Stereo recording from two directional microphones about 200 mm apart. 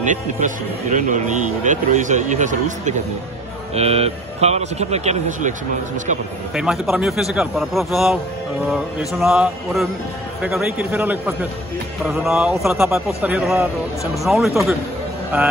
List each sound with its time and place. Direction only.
0.0 s a man's voice: 40° right (ahead or behind)
6.5 s a man's voice: centre (ahead or behind)